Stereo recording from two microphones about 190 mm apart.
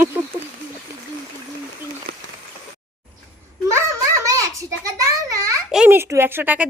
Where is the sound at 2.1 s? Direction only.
55° right (ahead or behind).